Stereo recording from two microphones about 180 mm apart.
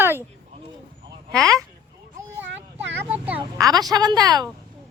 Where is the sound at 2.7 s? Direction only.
10° right (ahead or behind).